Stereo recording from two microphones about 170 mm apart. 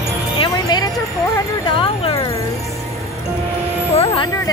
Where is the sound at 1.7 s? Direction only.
30° left (ahead or behind).